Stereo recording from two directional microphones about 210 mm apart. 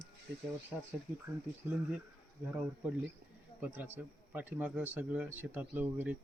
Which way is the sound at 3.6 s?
10° right (ahead or behind).